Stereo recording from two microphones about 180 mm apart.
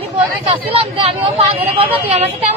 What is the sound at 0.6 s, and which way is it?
Speech, 30° right (ahead or behind).